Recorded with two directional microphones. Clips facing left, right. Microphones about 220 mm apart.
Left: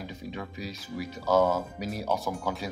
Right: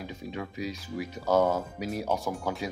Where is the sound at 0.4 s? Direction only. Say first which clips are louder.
Right 3 dB; 15° right (ahead or behind).